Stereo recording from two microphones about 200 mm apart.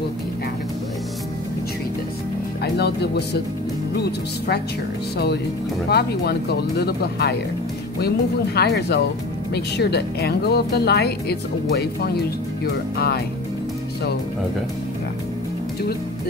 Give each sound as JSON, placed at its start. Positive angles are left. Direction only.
{"t": 2.6, "sound": "speech", "side_deg": 55}
{"t": 8.5, "sound": "speech", "side_deg": 55}